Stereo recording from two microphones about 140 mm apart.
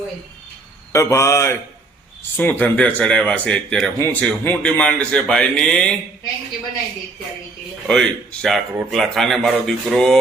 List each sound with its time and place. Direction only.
0.9 s speech: 20° left (ahead or behind)
7.9 s speech: 5° left (ahead or behind)